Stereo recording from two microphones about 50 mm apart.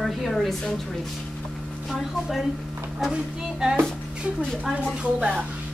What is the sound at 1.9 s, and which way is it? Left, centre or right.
Speech, centre.